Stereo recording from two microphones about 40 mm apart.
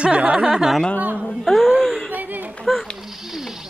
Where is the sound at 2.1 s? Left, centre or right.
Right.